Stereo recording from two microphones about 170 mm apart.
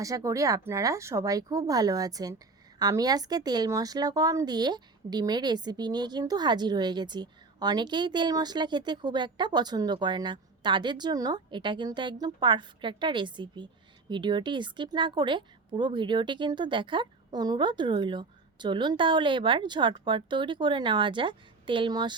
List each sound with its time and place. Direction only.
0.0 s speech: 20° right (ahead or behind)